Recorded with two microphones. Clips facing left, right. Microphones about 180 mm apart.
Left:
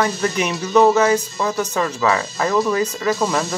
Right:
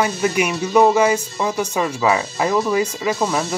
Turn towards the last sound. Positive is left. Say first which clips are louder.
# left 1 dB
turn(degrees=-10)  # may be behind; listen again after turning